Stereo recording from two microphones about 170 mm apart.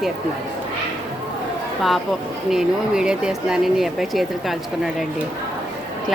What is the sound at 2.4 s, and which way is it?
Speech, 5° right (ahead or behind).